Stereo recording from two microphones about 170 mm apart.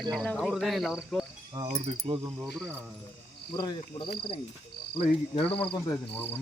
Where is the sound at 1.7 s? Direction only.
40° right (ahead or behind).